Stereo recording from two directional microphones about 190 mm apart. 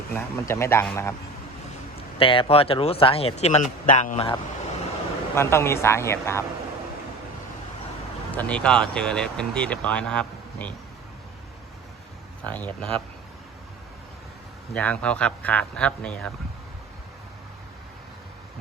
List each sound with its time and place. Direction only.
0.1 s speech: 15° left (ahead or behind)
2.1 s speech: 25° left (ahead or behind)
5.3 s speech: 15° left (ahead or behind)
8.4 s speech: 5° left (ahead or behind)
12.5 s speech: 10° left (ahead or behind)
14.7 s speech: 5° left (ahead or behind)